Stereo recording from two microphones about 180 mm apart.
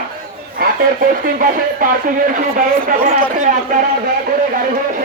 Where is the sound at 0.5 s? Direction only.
50° right (ahead or behind).